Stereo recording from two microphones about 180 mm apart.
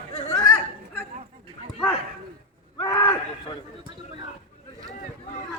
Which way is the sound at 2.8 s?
20° left (ahead or behind).